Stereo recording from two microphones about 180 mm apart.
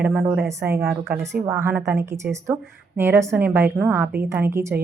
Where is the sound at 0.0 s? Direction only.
5° right (ahead or behind).